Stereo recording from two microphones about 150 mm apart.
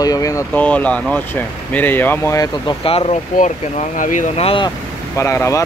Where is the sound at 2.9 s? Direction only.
40° left (ahead or behind).